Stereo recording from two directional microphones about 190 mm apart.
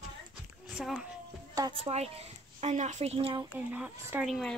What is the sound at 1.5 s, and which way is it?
Speech, 20° right (ahead or behind).